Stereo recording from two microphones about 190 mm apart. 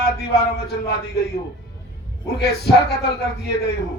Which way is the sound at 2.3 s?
60° left (ahead or behind).